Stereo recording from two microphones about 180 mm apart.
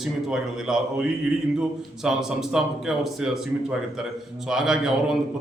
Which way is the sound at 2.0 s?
5° right (ahead or behind).